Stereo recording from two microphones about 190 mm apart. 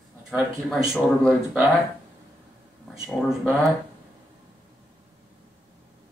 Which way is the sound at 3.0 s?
Centre (ahead or behind).